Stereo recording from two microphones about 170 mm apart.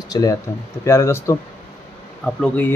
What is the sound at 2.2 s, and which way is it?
Speech, 5° left (ahead or behind).